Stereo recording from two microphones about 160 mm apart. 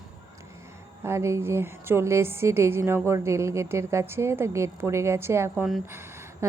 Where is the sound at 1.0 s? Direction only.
15° right (ahead or behind).